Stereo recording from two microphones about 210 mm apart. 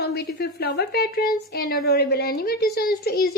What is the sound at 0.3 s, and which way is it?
A woman's voice, 50° left (ahead or behind).